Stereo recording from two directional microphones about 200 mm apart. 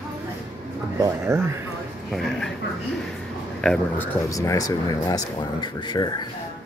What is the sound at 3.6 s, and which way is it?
Speech, 5° left (ahead or behind).